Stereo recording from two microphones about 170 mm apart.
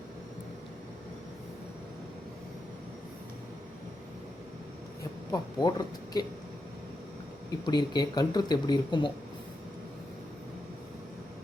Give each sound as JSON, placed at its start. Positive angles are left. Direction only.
{"t": 5.3, "sound": "speech", "side_deg": 25}
{"t": 7.7, "sound": "speech", "side_deg": 25}